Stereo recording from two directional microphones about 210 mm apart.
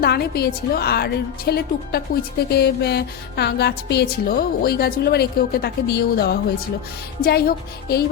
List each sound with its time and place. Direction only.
0.0 s speech: 50° left (ahead or behind)